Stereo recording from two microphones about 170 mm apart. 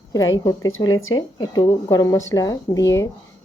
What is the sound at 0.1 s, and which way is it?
Speech, 20° left (ahead or behind).